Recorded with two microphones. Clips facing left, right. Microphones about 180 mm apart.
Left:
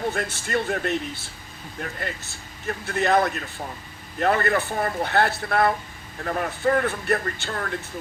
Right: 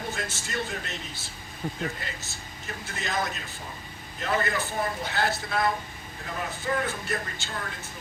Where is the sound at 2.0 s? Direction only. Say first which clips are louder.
Left 6 dB; 60° left (ahead or behind).